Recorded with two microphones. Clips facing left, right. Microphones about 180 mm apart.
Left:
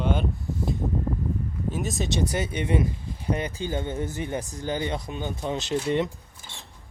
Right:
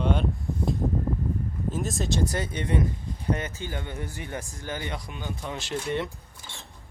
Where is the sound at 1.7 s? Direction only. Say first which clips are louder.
Left 1 dB; centre (ahead or behind).